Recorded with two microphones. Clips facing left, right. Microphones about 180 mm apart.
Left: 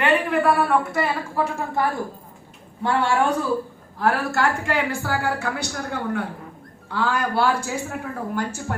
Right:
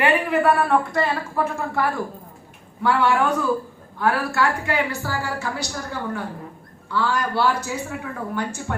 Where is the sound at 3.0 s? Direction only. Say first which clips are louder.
Right 1 dB; 35° left (ahead or behind); by 6.3 s 60° left (ahead or behind).